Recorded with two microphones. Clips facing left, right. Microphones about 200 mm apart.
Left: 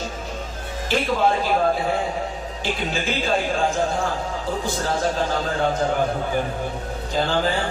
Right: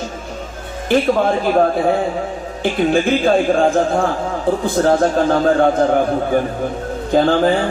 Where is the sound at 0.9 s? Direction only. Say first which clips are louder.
Right 6 dB; 55° right (ahead or behind).